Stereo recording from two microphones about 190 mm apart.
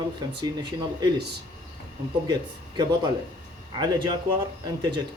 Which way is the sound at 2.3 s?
20° right (ahead or behind).